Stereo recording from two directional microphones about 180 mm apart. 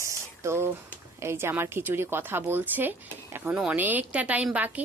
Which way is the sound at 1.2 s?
15° right (ahead or behind).